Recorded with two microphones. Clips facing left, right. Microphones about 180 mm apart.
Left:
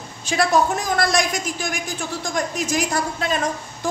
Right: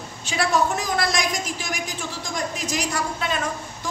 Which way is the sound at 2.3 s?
50° left (ahead or behind).